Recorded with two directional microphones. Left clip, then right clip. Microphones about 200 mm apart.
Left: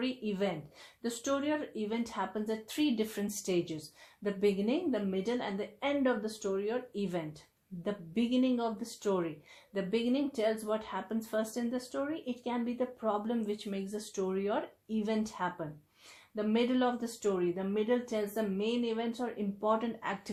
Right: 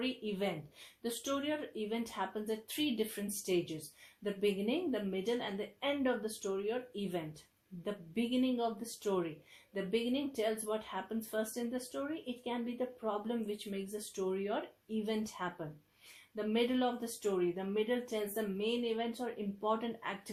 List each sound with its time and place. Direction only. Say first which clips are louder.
1.0 s speech: left 4 dB; 25° left (ahead or behind)